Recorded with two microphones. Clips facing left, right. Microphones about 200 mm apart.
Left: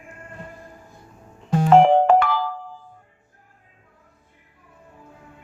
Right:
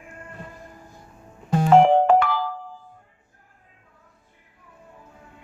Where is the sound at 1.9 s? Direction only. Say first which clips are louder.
Left 1 dB; 65° left (ahead or behind).